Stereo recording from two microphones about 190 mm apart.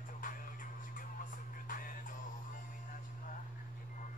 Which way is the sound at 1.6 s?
45° left (ahead or behind).